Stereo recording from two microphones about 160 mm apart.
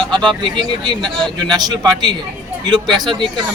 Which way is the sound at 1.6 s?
25° right (ahead or behind).